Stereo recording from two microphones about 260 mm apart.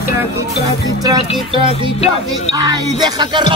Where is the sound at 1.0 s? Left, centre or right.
Centre.